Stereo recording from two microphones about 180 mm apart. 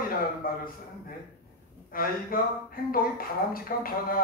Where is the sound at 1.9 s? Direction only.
55° left (ahead or behind).